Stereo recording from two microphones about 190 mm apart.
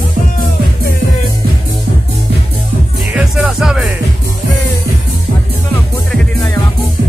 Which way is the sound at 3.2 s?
Centre (ahead or behind).